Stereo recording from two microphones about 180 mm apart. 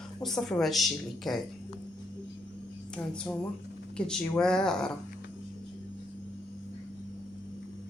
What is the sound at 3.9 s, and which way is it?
Speech, 5° left (ahead or behind).